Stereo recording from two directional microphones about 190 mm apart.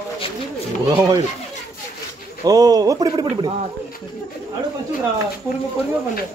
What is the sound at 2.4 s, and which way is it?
Speech, 20° right (ahead or behind).